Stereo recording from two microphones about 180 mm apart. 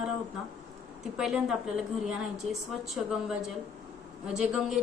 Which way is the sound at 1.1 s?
5° right (ahead or behind).